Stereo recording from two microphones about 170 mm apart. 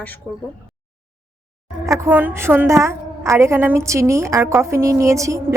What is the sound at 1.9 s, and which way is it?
A woman's voice, 15° right (ahead or behind).